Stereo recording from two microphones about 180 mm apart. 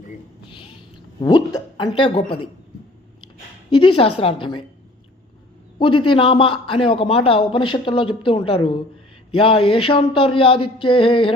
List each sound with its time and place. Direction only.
0.5 s a sound: 30° left (ahead or behind)
1.2 s a man's voice: 25° left (ahead or behind)
3.7 s a man's voice: 30° left (ahead or behind)
5.8 s a man's voice: 30° left (ahead or behind)